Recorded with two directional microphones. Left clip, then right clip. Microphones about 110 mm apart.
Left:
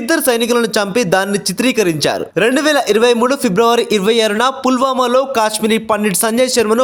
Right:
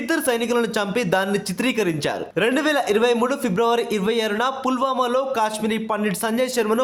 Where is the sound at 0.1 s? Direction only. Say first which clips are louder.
Left 8 dB; 50° left (ahead or behind).